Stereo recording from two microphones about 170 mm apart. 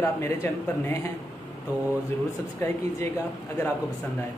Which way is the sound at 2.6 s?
15° left (ahead or behind).